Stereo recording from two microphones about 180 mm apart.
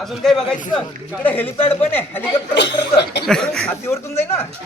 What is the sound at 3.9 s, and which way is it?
Speech, 15° left (ahead or behind).